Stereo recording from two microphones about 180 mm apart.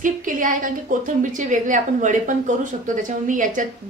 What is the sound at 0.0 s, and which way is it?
A woman's voice, 45° right (ahead or behind).